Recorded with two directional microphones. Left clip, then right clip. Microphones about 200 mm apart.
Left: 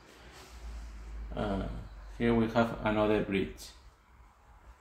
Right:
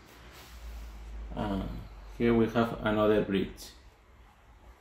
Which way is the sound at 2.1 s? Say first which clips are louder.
Right 2 dB; centre (ahead or behind).